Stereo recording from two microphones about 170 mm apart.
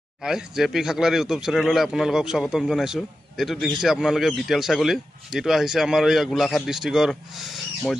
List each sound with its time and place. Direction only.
0.2 s speech: 5° right (ahead or behind)